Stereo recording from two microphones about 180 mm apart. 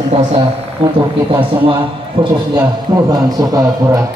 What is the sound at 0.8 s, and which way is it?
Speech, 30° right (ahead or behind).